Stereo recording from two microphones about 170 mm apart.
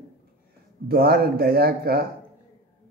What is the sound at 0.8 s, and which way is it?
A man's voice, 65° right (ahead or behind).